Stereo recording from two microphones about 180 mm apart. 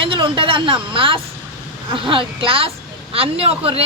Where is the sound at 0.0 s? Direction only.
30° right (ahead or behind).